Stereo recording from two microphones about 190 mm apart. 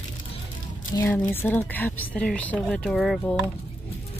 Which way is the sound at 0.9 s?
15° left (ahead or behind).